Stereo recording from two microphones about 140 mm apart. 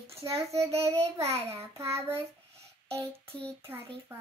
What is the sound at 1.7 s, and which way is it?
Speech, 20° right (ahead or behind).